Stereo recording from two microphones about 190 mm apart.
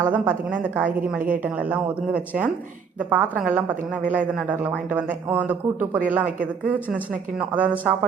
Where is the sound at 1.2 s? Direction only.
45° right (ahead or behind).